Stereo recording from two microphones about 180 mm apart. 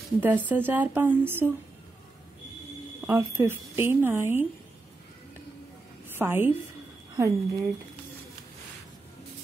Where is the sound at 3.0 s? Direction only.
15° right (ahead or behind).